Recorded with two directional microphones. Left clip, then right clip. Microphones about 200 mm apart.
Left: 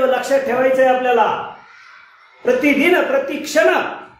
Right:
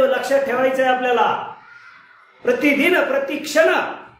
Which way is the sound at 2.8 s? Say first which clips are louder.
Left 2 dB; 15° left (ahead or behind).